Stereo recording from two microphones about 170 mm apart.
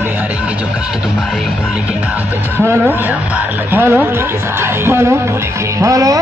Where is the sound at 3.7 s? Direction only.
10° right (ahead or behind).